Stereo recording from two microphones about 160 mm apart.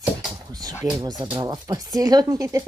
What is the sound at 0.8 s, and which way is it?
Speech, 25° right (ahead or behind).